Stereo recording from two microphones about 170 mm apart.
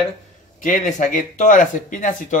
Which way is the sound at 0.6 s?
45° left (ahead or behind).